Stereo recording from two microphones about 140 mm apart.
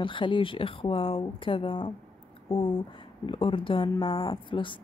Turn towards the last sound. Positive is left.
turn(degrees=35)  # may be behind; listen again after turning